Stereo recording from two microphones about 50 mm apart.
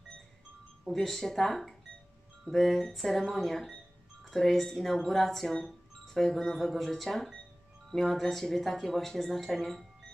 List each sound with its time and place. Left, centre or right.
0.9 s speech: centre